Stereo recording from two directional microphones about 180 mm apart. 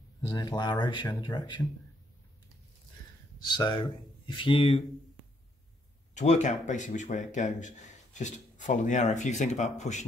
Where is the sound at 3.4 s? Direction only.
25° left (ahead or behind).